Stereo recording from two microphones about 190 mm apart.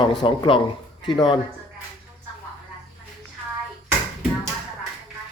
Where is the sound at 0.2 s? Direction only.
25° left (ahead or behind).